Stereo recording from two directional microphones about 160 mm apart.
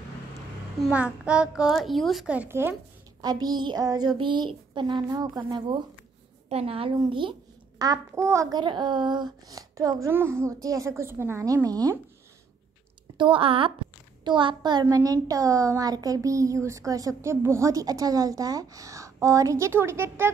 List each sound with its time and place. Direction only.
0.7 s a child's voice: 5° right (ahead or behind)
3.2 s a woman's voice: 25° right (ahead or behind)
6.5 s a woman's voice: 35° right (ahead or behind)
8.1 s a woman's voice: 15° right (ahead or behind)
13.2 s a woman's voice: 35° right (ahead or behind); by 20.2 s 15° right (ahead or behind)